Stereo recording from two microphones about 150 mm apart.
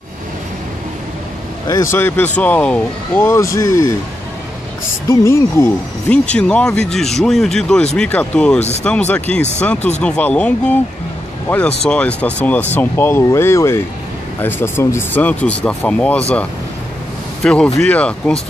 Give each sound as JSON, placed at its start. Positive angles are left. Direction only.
{"t": 1.7, "sound": "speech", "side_deg": 20}
{"t": 3.3, "sound": "speech", "side_deg": 20}
{"t": 5.0, "sound": "speech", "side_deg": 20}
{"t": 6.0, "sound": "speech", "side_deg": 5}
{"t": 8.5, "sound": "speech", "side_deg": 45}
{"t": 9.1, "sound": "speech", "side_deg": 10}
{"t": 9.8, "sound": "speech", "side_deg": 50}
{"t": 10.0, "sound": "speech", "side_deg": 10}
{"t": 17.4, "sound": "speech", "side_deg": 5}